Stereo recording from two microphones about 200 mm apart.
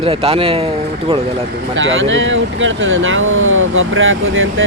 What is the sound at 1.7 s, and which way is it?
Speech, 70° right (ahead or behind).